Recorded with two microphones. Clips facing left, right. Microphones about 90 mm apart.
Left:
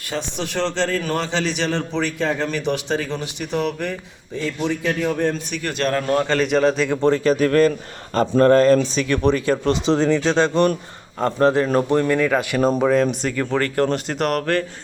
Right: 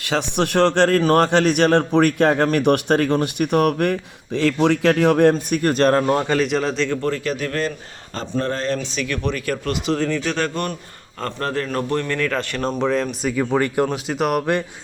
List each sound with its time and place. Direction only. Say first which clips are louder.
0.0 s a man's voice: right 6 dB; 75° right (ahead or behind); by 3.9 s 60° right (ahead or behind)
4.4 s speech: right 6 dB; 80° right
5.3 s speech: right 7 dB; 45° right (ahead or behind); by 6.2 s 25° right (ahead or behind)
6.2 s a man's voice: left 2 dB; 5° right (ahead or behind)
6.9 s speech: left 5 dB; 25° left (ahead or behind)
7.3 s speech: left 8 dB; 40° left (ahead or behind)
9.0 s a man's voice: left 6 dB; 35° left (ahead or behind); by 13.3 s centre (ahead or behind)
13.3 s a man's voice: right 2 dB; 10° right (ahead or behind)